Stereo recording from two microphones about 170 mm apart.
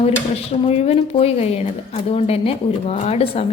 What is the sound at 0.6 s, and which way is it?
Speech, 40° left (ahead or behind).